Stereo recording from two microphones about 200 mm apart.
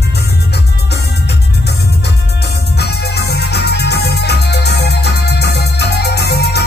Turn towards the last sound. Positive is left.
turn(degrees=55)  # may be behind; listen again after turning